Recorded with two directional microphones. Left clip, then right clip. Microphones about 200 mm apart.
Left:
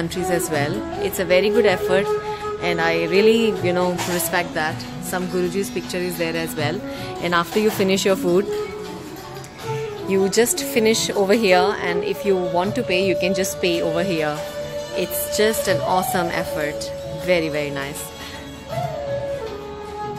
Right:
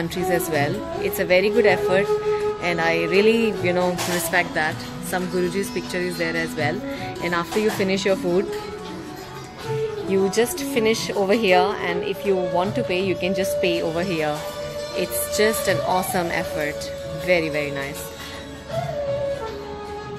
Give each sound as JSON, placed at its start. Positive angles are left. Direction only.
{"t": 0.1, "sound": "a woman's voice", "side_deg": 5}
{"t": 10.0, "sound": "a woman's voice", "side_deg": 15}